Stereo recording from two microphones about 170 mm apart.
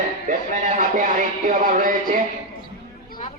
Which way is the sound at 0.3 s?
50° right (ahead or behind).